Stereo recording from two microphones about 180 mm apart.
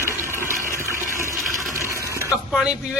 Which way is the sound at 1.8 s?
15° right (ahead or behind).